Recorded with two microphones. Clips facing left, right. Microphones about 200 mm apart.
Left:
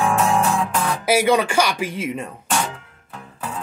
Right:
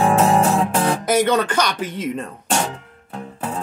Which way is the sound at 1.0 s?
10° left (ahead or behind).